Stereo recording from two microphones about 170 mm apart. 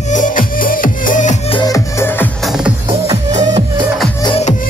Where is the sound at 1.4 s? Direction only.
25° left (ahead or behind).